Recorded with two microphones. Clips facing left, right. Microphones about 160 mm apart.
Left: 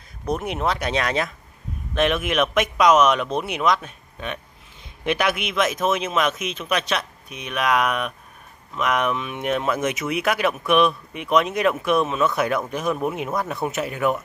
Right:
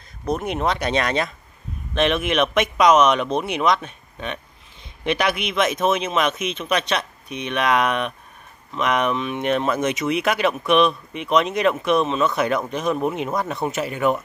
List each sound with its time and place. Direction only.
0.3 s speech: 5° left (ahead or behind)